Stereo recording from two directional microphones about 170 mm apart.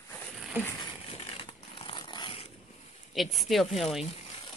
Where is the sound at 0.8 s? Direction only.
35° left (ahead or behind).